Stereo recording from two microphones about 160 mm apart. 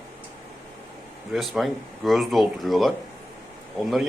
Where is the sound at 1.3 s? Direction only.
Centre (ahead or behind).